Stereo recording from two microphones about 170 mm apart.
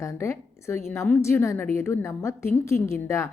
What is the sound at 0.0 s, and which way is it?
Speech, 15° left (ahead or behind).